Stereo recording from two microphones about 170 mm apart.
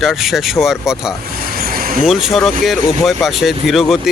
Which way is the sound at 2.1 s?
Centre (ahead or behind).